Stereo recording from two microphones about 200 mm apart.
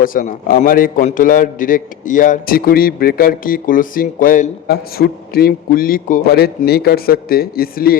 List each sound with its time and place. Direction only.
0.0 s a man's voice: 45° left (ahead or behind)